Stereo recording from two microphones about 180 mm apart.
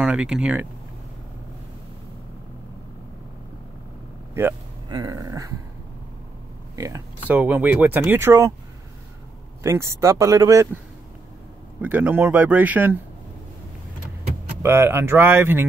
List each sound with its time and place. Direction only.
0.0 s speech: 5° right (ahead or behind)
4.3 s speech: 10° right (ahead or behind)
4.8 s a sound: 20° right (ahead or behind)
6.7 s speech: 20° right (ahead or behind)
9.6 s speech: 15° right (ahead or behind)
11.8 s speech: 10° right (ahead or behind)
14.6 s speech: 15° right (ahead or behind)